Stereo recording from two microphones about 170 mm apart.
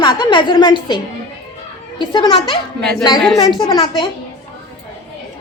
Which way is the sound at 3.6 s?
30° left (ahead or behind).